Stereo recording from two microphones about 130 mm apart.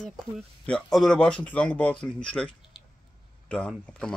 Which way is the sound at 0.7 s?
5° left (ahead or behind).